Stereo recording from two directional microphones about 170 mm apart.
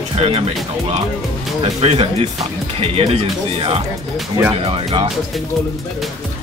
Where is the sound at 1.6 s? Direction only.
35° right (ahead or behind).